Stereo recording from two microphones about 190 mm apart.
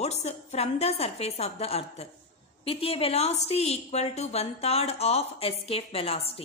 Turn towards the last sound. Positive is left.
turn(degrees=30)  # may be behind; listen again after turning